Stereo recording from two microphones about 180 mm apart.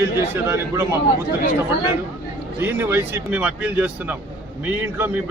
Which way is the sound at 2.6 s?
15° right (ahead or behind).